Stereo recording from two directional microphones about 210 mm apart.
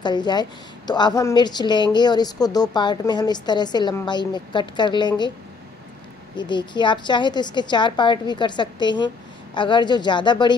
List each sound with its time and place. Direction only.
0.0 s a woman's voice: 20° left (ahead or behind)
6.3 s a woman's voice: 20° left (ahead or behind)